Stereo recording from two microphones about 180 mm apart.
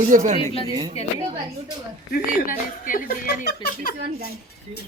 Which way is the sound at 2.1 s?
50° left (ahead or behind).